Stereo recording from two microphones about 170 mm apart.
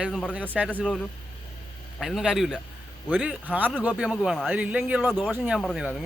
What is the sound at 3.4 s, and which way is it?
Speech, 10° right (ahead or behind).